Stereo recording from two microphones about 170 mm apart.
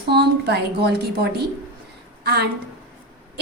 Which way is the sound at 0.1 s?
75° right (ahead or behind).